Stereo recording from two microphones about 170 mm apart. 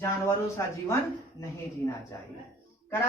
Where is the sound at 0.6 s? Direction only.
15° left (ahead or behind).